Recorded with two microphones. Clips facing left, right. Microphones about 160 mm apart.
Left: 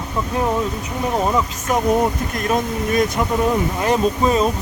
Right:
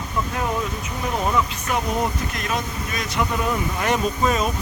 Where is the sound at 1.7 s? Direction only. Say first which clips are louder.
Left 8 dB; 40° left (ahead or behind).